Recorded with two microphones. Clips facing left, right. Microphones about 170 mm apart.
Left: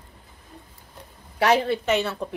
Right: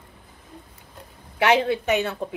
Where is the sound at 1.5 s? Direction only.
20° right (ahead or behind).